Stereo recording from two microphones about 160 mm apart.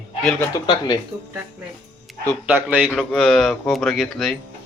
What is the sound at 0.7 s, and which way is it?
Speech, 25° left (ahead or behind).